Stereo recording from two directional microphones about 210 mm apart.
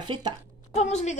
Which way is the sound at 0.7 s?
30° left (ahead or behind).